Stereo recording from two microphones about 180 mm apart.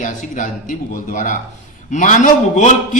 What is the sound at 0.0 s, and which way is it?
A man's voice, 45° left (ahead or behind).